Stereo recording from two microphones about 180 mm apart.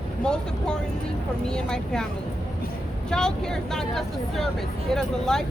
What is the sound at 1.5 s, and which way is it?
Speech, 5° left (ahead or behind).